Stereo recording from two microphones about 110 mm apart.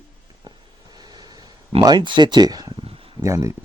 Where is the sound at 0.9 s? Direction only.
35° right (ahead or behind).